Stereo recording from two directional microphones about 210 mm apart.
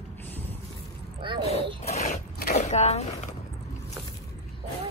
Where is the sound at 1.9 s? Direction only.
30° left (ahead or behind).